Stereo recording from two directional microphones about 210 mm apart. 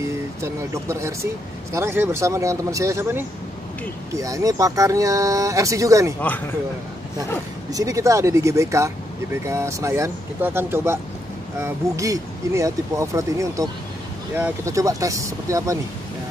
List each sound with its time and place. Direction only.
0.4 s speech: 15° right (ahead or behind)
7.7 s speech: 15° right (ahead or behind)